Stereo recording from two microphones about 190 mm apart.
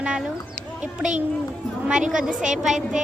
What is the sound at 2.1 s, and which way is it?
Speech, 5° right (ahead or behind).